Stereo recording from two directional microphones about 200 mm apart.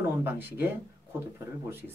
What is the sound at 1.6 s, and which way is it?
Speech, 10° right (ahead or behind).